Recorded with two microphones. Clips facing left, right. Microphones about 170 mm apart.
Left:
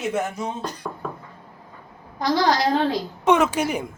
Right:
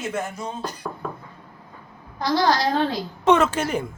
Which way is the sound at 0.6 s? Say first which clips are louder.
Even; centre (ahead or behind).